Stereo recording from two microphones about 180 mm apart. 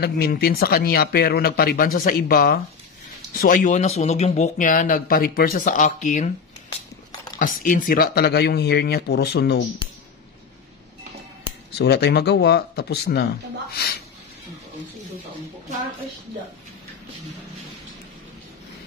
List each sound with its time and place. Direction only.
0.0 s speech: 55° left (ahead or behind); by 6.3 s 40° left (ahead or behind)
7.3 s speech: 50° left (ahead or behind); by 9.7 s 65° left (ahead or behind)
11.8 s speech: 65° left (ahead or behind)